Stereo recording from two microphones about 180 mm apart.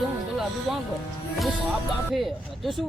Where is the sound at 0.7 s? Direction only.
Centre (ahead or behind).